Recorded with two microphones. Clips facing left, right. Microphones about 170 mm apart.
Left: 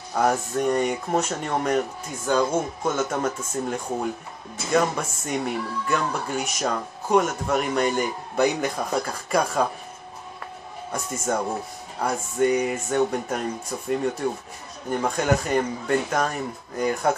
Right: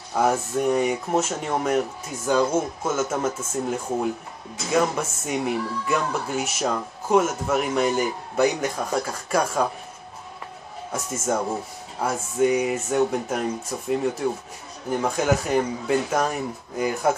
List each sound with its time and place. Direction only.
0.1 s speech: 5° right (ahead or behind)
10.9 s speech: 5° right (ahead or behind)